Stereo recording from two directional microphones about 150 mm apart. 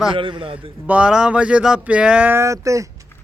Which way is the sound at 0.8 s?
10° right (ahead or behind).